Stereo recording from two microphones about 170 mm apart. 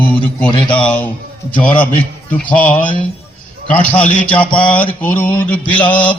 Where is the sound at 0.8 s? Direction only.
5° left (ahead or behind).